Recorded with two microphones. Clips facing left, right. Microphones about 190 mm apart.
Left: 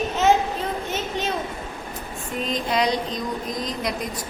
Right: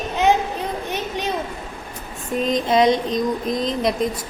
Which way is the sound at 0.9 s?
15° right (ahead or behind).